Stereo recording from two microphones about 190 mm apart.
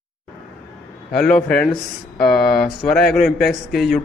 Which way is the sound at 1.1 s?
5° left (ahead or behind).